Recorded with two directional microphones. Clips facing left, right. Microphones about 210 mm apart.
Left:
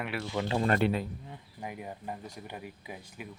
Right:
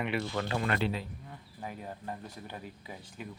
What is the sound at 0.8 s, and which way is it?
Speech, 55° left (ahead or behind).